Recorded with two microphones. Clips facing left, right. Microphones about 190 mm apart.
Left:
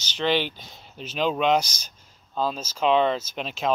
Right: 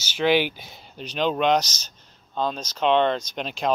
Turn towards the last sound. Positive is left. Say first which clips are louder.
# right 1 dB
turn(degrees=0)  # may be behind; listen again after turning